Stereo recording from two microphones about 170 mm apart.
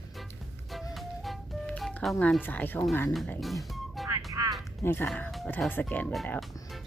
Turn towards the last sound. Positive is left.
turn(degrees=5)  # may be behind; listen again after turning